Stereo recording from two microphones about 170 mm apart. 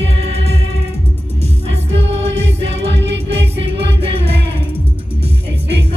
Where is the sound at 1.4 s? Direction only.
35° right (ahead or behind).